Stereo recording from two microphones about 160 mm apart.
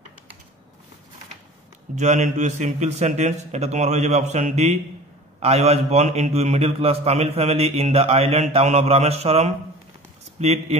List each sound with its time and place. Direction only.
2.0 s a man's voice: 50° right (ahead or behind)